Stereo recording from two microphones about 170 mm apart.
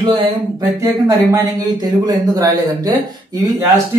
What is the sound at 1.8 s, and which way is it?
Speech, 20° right (ahead or behind).